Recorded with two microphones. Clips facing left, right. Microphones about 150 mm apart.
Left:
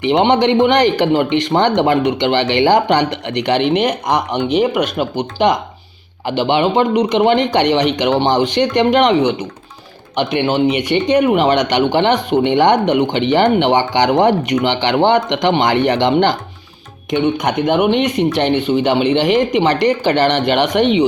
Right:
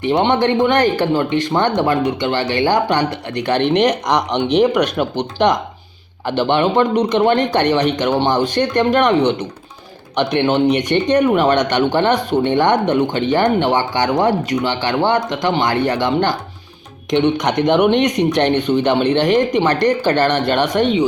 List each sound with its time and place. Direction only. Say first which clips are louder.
0.0 s speech: left 2 dB; 15° left (ahead or behind)
17.1 s speech: even; 5° left (ahead or behind)